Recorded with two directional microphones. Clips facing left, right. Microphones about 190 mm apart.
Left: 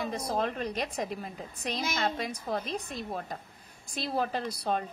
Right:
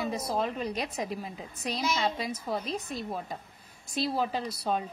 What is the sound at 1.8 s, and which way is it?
Speech, 50° left (ahead or behind).